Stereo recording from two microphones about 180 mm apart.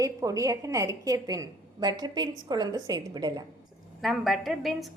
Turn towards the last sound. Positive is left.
turn(degrees=0)  # may be behind; listen again after turning